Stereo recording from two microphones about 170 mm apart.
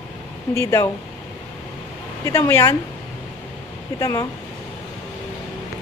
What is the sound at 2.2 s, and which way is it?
Speech, 15° left (ahead or behind).